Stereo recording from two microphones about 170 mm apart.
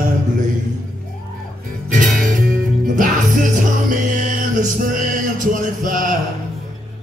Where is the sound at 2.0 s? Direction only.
50° right (ahead or behind).